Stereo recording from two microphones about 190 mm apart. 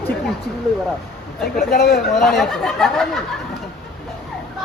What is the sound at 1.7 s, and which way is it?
Speech, 55° left (ahead or behind).